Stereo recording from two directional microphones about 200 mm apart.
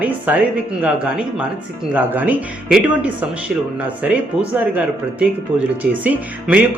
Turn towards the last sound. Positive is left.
turn(degrees=-10)  # may be behind; listen again after turning